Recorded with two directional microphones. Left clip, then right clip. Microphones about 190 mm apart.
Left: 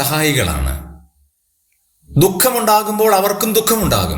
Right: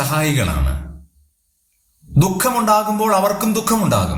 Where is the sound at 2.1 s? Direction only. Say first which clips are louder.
Left 3 dB; 25° left (ahead or behind).